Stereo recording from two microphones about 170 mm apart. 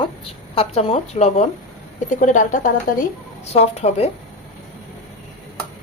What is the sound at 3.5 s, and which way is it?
Speech, 40° left (ahead or behind).